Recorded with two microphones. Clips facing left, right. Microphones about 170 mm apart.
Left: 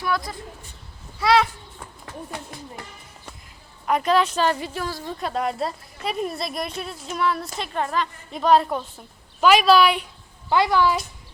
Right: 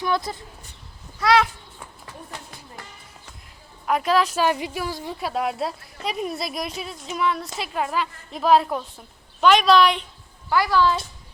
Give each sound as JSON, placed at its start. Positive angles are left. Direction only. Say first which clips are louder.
{"t": 0.3, "sound": "speech", "louder": "right 3 dB", "side_deg": -25}
{"t": 1.2, "sound": "a woman's voice", "louder": "even", "side_deg": 0}
{"t": 3.8, "sound": "a woman's voice", "louder": "left 1 dB", "side_deg": 0}
{"t": 4.4, "sound": "a woman's voice", "louder": "right 1 dB", "side_deg": -15}
{"t": 10.5, "sound": "speech", "louder": "left 1 dB", "side_deg": 20}